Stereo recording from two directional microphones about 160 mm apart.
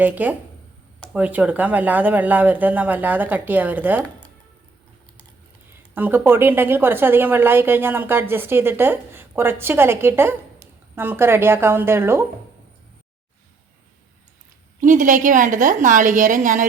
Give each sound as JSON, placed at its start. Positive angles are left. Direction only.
{"t": 0.0, "sound": "a woman's voice", "side_deg": -10}
{"t": 5.9, "sound": "a woman's voice", "side_deg": -10}
{"t": 14.8, "sound": "a woman's voice", "side_deg": -55}